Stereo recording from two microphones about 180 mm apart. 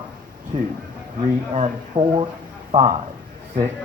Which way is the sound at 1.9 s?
30° right (ahead or behind).